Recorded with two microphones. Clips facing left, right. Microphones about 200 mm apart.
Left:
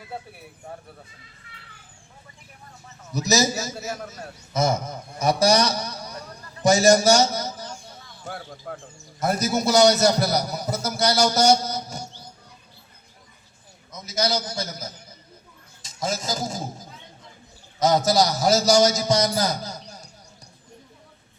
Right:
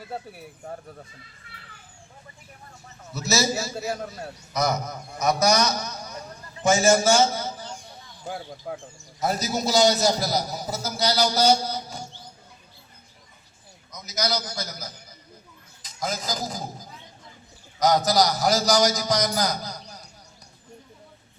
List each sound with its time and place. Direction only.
3.1 s a man's voice: 15° left (ahead or behind)
4.5 s a man's voice: 25° left (ahead or behind)
8.2 s speech: 10° right (ahead or behind)
9.2 s a man's voice: 50° left (ahead or behind)
13.9 s a man's voice: 25° left (ahead or behind)